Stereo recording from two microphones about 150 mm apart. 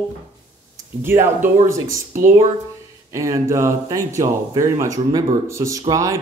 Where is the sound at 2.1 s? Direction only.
55° right (ahead or behind).